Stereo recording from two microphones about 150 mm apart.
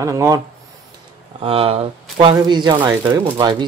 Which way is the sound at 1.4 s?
40° right (ahead or behind).